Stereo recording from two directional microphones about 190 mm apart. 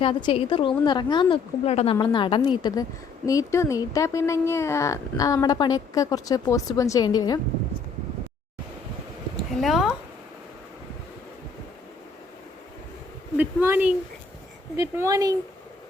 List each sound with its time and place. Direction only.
0.0 s a woman's voice: 25° left (ahead or behind)
9.3 s a sound: centre (ahead or behind)
13.3 s speech: 10° right (ahead or behind)